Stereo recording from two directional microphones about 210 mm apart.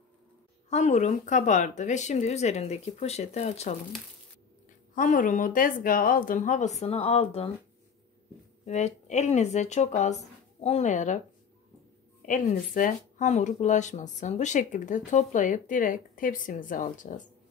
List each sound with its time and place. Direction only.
0.7 s speech: 35° left (ahead or behind)
4.9 s speech: 40° left (ahead or behind)
8.6 s speech: 35° left (ahead or behind)
12.2 s speech: 40° left (ahead or behind)